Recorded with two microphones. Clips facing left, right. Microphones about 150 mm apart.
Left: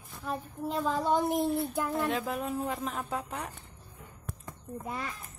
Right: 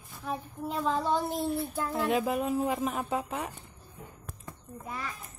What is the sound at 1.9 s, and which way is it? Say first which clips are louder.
Speech: right 3 dB; 10° right (ahead or behind).